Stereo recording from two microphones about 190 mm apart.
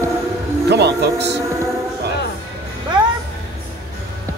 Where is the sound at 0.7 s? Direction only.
60° right (ahead or behind).